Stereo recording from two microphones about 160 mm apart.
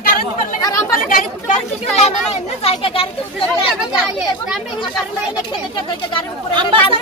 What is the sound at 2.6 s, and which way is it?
Speech, 35° left (ahead or behind).